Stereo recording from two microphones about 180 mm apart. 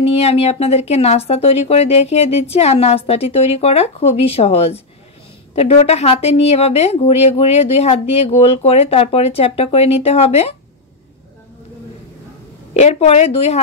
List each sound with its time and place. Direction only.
0.0 s a woman's voice: 35° left (ahead or behind)
12.7 s a woman's voice: 40° left (ahead or behind)